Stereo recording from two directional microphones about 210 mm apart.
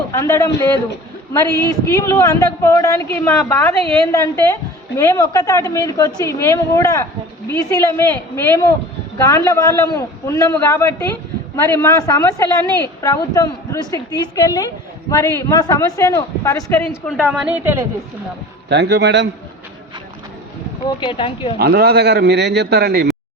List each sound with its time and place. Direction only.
0.1 s a woman's voice: 15° left (ahead or behind)
2.0 s a woman's voice: 15° left (ahead or behind)
16.9 s a woman's voice: centre (ahead or behind)
18.7 s a man's voice: 55° right (ahead or behind)
20.8 s speech: 25° left (ahead or behind)
21.6 s a man's voice: 50° right (ahead or behind)